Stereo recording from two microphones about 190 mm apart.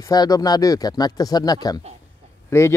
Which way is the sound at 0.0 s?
20° left (ahead or behind).